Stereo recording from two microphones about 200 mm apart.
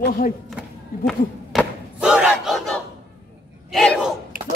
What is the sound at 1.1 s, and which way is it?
Battle cry, centre (ahead or behind).